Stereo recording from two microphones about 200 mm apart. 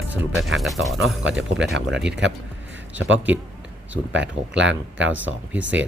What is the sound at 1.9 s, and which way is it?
Speech, 5° right (ahead or behind).